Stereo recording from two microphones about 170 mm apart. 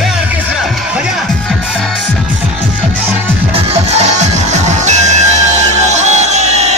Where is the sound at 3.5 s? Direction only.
40° right (ahead or behind).